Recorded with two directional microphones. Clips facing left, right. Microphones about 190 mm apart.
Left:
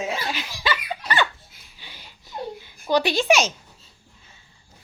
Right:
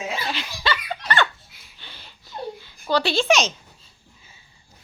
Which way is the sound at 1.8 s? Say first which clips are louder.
Even; 10° left (ahead or behind).